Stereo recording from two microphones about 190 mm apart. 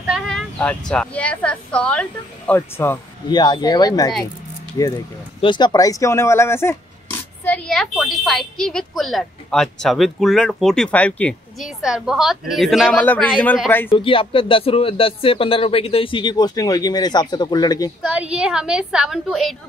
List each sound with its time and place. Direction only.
0.3 s a woman's voice: 5° left (ahead or behind)
3.3 s a woman's voice: 20° left (ahead or behind)
13.8 s speech: 25° left (ahead or behind)
18.0 s a woman's voice: 5° right (ahead or behind)